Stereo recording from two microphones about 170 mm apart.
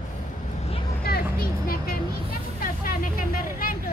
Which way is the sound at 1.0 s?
65° left (ahead or behind).